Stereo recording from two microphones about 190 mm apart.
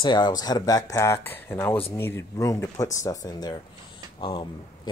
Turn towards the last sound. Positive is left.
turn(degrees=25)  # may be behind; listen again after turning